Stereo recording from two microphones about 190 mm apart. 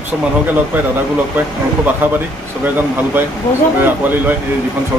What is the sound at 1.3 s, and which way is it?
Speech, 10° right (ahead or behind).